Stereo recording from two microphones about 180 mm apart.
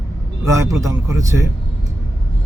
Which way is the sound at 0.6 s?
20° right (ahead or behind).